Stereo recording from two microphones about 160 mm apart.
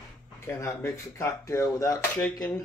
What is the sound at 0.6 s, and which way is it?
Speech, 15° left (ahead or behind).